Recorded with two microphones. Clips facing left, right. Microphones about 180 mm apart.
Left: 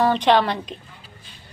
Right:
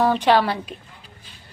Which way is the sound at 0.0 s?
5° right (ahead or behind).